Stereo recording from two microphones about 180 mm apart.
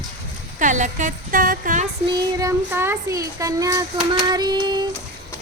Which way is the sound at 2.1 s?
20° right (ahead or behind).